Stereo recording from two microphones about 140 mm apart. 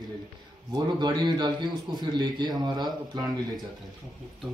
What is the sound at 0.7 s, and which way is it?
A man's voice, 30° right (ahead or behind).